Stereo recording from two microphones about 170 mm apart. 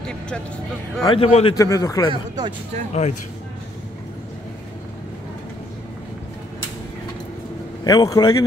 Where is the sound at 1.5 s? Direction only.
20° left (ahead or behind).